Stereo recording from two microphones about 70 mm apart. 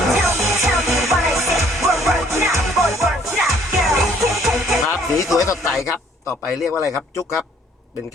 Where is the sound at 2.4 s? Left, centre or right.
Right.